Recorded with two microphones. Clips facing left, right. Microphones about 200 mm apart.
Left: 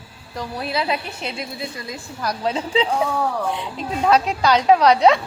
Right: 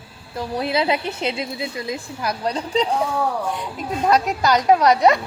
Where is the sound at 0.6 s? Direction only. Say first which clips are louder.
Right 3 dB; 25° right (ahead or behind).